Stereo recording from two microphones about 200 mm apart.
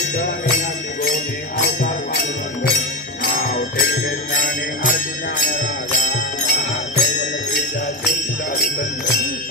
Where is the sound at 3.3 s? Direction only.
50° left (ahead or behind).